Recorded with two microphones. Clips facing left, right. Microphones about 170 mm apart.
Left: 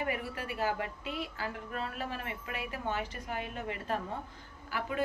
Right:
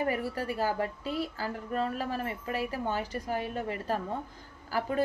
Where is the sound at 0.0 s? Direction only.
35° right (ahead or behind).